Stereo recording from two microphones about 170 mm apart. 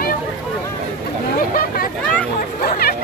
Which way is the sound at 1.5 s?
55° left (ahead or behind).